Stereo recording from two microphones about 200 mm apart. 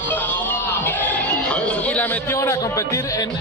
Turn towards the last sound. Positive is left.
turn(degrees=15)  # may be behind; listen again after turning